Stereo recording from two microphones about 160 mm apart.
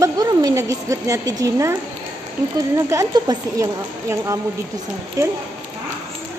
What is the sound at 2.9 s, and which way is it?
Speech, 20° right (ahead or behind).